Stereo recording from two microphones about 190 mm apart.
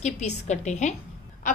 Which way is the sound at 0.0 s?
35° left (ahead or behind).